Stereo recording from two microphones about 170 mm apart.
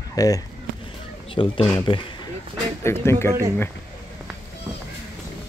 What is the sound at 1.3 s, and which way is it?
Speech, 30° left (ahead or behind).